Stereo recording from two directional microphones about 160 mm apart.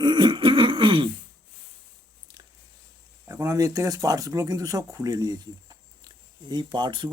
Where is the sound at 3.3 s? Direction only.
20° right (ahead or behind).